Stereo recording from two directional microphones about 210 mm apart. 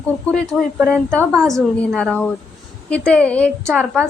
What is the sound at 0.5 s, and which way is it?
Speech, 5° right (ahead or behind).